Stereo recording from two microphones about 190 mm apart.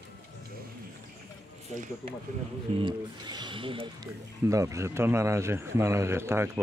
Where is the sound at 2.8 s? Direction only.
25° right (ahead or behind).